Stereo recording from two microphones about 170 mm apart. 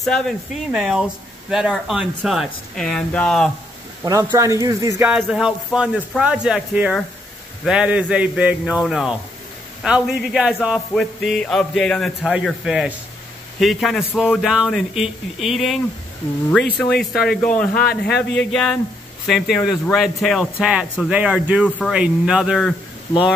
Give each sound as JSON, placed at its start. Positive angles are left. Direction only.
{"t": 0.0, "sound": "speech", "side_deg": 0}
{"t": 4.0, "sound": "speech", "side_deg": -20}
{"t": 5.1, "sound": "speech", "side_deg": -5}
{"t": 18.1, "sound": "speech", "side_deg": 90}
{"t": 18.5, "sound": "speech", "side_deg": 5}
{"t": 21.6, "sound": "speech", "side_deg": 10}
{"t": 21.9, "sound": "speech", "side_deg": -5}